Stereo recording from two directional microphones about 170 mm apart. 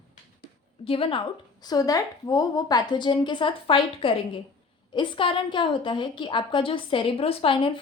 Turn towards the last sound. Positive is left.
turn(degrees=30)  # may be behind; listen again after turning